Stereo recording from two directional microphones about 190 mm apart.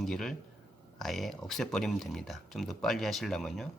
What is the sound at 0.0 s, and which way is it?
Speech, centre (ahead or behind).